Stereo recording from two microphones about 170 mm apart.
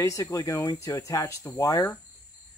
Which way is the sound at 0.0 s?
20° left (ahead or behind).